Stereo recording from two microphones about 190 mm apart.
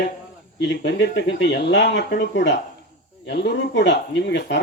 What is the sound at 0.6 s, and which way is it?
Speech, 65° left (ahead or behind).